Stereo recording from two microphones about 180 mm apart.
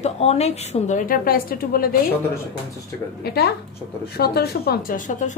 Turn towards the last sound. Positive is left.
turn(degrees=45)  # may be behind; listen again after turning